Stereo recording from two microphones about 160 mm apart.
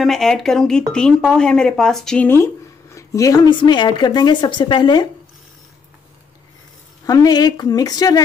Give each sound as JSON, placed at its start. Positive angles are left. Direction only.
{"t": 0.0, "sound": "speech", "side_deg": 0}
{"t": 7.1, "sound": "a woman's voice", "side_deg": 25}